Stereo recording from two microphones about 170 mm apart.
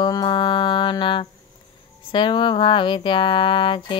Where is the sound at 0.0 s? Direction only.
25° left (ahead or behind).